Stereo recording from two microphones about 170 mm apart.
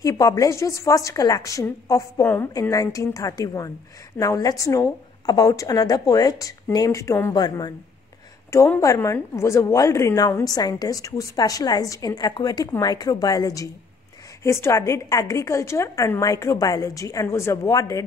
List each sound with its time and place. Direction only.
0.0 s a woman's voice: 20° left (ahead or behind)